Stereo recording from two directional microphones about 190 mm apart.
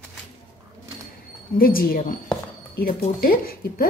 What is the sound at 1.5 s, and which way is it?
Speech, 50° left (ahead or behind).